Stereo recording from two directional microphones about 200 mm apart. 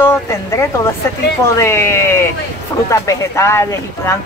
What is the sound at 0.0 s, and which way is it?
A woman's voice, 10° left (ahead or behind).